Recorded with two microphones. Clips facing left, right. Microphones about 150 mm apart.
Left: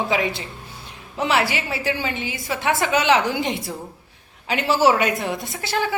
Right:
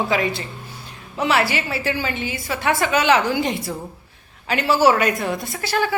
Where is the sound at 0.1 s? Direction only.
15° left (ahead or behind).